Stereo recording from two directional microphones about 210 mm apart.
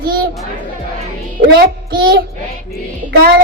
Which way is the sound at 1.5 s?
45° right (ahead or behind).